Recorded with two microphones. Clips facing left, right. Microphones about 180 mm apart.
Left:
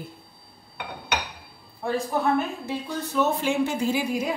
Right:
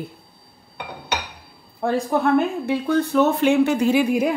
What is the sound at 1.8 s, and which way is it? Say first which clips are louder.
A woman's voice: right 5 dB; 65° right (ahead or behind).